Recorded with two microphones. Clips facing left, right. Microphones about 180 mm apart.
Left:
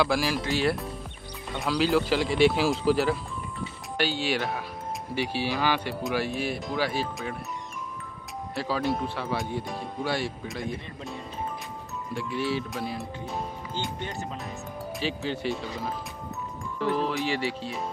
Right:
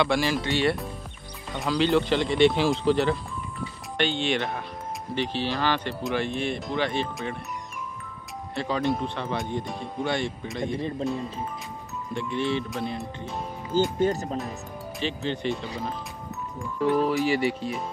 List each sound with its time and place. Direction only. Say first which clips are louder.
0.0 s speech: right 1 dB; 5° left (ahead or behind)
8.5 s speech: right 2 dB; 5° left (ahead or behind)
12.1 s speech: right 2 dB; 5° left (ahead or behind)
13.9 s speech: right 10 dB; 40° right (ahead or behind)
15.0 s speech: right 2 dB; 5° left (ahead or behind)
17.1 s speech: right 5 dB; centre (ahead or behind)